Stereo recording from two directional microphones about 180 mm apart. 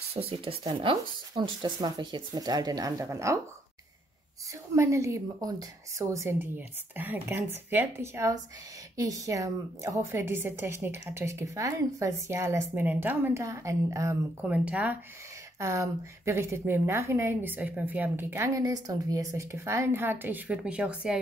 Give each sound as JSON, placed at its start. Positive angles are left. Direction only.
{"t": 0.1, "sound": "speech", "side_deg": -30}
{"t": 4.7, "sound": "a woman's voice", "side_deg": -15}
{"t": 14.4, "sound": "a woman's voice", "side_deg": -5}